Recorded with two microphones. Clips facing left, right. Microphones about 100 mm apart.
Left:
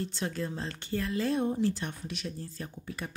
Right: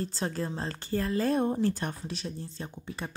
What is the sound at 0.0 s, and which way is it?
Speech, 35° right (ahead or behind).